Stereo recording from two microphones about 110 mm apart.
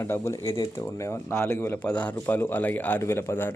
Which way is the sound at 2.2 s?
20° left (ahead or behind).